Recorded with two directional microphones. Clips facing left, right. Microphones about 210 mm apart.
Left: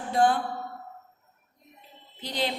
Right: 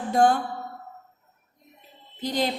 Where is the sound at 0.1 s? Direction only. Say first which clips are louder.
Right 3 dB; 45° right (ahead or behind).